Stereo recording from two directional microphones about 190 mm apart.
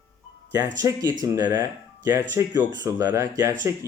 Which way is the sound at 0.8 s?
20° right (ahead or behind).